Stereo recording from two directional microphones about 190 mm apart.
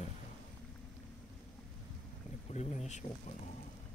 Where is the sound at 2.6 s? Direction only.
35° left (ahead or behind).